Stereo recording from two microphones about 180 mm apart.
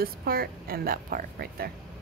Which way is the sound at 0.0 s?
55° right (ahead or behind).